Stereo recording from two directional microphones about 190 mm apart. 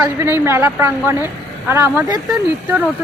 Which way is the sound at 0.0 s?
10° right (ahead or behind).